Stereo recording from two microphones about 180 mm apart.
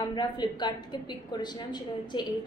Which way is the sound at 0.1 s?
25° left (ahead or behind).